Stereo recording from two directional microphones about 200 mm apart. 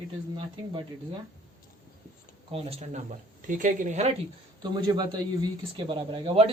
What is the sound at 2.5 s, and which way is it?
Speech, 30° right (ahead or behind).